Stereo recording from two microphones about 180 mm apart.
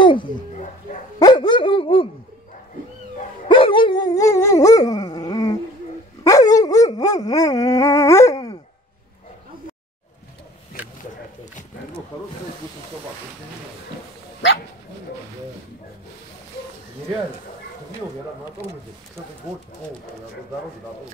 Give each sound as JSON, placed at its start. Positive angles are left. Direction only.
{"t": 0.0, "sound": "dog", "side_deg": 25}
{"t": 3.4, "sound": "dog", "side_deg": 30}